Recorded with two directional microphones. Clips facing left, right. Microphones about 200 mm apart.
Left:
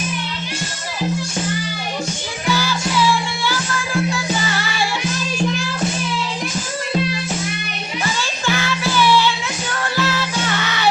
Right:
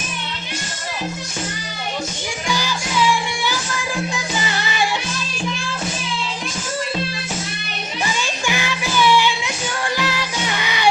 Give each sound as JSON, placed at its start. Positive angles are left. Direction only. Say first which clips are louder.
{"t": 2.5, "sound": "music", "louder": "left 4 dB", "side_deg": -15}
{"t": 8.0, "sound": "music", "louder": "left 1 dB", "side_deg": -15}